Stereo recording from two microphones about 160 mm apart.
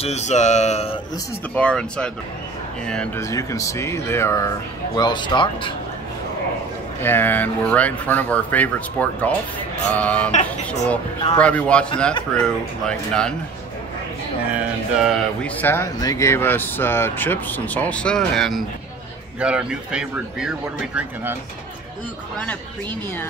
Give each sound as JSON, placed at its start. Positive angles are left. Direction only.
{"t": 0.0, "sound": "a sound", "side_deg": 45}
{"t": 1.5, "sound": "speech", "side_deg": 5}
{"t": 3.2, "sound": "speech", "side_deg": 20}
{"t": 7.0, "sound": "speech", "side_deg": 15}
{"t": 11.3, "sound": "speech", "side_deg": 5}
{"t": 15.0, "sound": "speech", "side_deg": 10}